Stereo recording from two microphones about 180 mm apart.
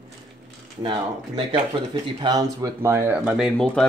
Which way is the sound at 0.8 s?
30° right (ahead or behind).